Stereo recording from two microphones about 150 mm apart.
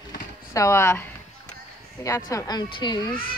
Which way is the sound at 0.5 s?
20° left (ahead or behind).